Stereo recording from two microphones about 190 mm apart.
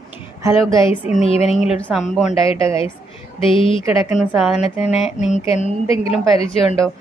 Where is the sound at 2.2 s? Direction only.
30° left (ahead or behind).